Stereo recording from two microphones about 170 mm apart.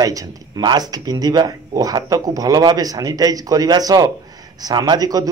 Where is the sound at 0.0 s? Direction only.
20° right (ahead or behind).